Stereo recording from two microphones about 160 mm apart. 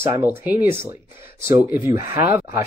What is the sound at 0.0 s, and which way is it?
Speech, 15° right (ahead or behind).